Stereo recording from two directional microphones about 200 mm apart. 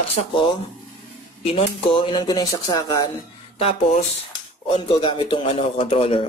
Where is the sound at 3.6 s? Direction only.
30° left (ahead or behind).